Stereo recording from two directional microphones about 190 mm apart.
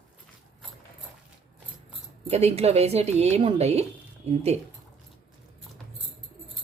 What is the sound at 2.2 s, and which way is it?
A woman's voice, 35° right (ahead or behind).